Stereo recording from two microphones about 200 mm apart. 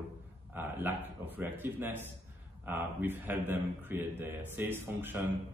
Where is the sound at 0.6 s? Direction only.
10° right (ahead or behind).